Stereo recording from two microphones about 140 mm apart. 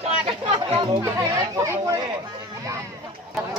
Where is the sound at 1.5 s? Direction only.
25° right (ahead or behind).